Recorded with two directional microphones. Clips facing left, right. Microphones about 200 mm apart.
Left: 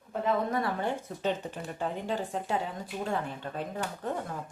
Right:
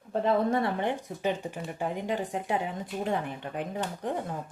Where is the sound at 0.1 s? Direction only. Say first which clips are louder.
Right 4 dB; 30° right (ahead or behind).